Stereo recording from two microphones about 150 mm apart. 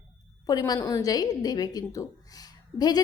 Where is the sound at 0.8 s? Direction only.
20° left (ahead or behind).